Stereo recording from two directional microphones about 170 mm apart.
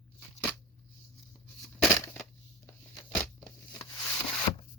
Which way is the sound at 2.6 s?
10° left (ahead or behind).